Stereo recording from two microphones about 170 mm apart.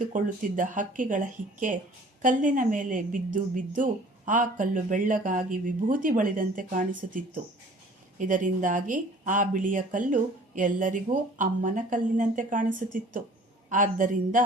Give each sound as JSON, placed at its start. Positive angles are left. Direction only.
{"t": 0.0, "sound": "a woman's voice", "side_deg": -50}